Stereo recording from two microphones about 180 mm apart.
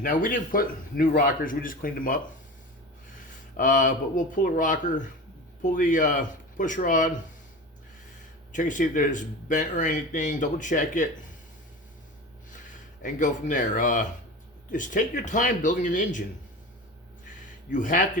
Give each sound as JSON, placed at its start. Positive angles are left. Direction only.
{"t": 0.0, "sound": "speech", "side_deg": 50}
{"t": 3.6, "sound": "speech", "side_deg": 45}
{"t": 8.5, "sound": "speech", "side_deg": 45}
{"t": 13.0, "sound": "speech", "side_deg": 45}
{"t": 17.7, "sound": "speech", "side_deg": 45}